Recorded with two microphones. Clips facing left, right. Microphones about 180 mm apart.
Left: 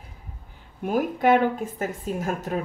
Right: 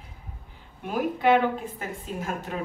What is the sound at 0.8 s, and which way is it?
A woman's voice, 45° left (ahead or behind).